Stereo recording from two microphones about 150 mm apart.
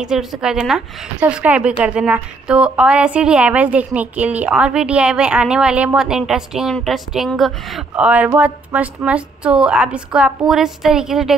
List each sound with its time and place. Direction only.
0.0 s a woman's voice: 5° right (ahead or behind)